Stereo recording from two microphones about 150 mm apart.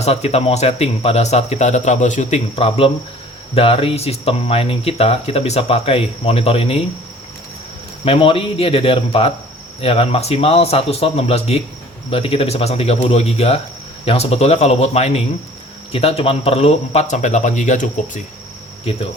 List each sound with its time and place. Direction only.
0.0 s speech: 45° left (ahead or behind)
8.0 s speech: 40° left (ahead or behind); by 18.2 s 55° left (ahead or behind)